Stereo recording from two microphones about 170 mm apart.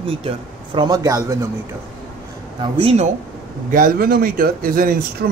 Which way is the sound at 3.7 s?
60° right (ahead or behind).